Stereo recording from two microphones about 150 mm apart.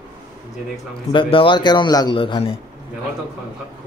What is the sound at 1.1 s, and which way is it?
A man's voice, 35° left (ahead or behind).